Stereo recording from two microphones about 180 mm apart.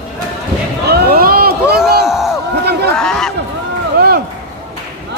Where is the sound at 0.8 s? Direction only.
60° right (ahead or behind).